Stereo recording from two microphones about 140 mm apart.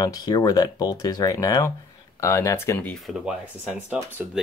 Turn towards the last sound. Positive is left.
turn(degrees=-10)  # may be behind; listen again after turning